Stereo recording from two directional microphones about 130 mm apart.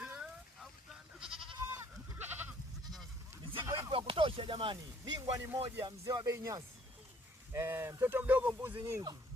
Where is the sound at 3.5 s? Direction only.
40° right (ahead or behind).